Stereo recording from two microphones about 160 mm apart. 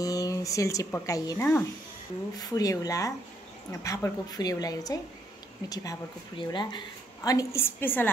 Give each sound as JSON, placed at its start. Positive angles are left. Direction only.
{"t": 0.0, "sound": "a woman's voice", "side_deg": 20}